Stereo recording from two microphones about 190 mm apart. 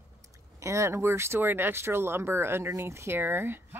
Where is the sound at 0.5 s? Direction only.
15° right (ahead or behind).